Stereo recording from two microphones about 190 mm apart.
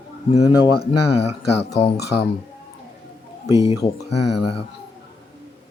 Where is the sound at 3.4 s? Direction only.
15° right (ahead or behind).